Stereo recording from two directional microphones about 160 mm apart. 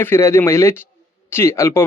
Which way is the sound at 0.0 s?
15° left (ahead or behind).